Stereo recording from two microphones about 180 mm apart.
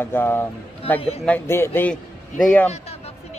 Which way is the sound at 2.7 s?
35° left (ahead or behind).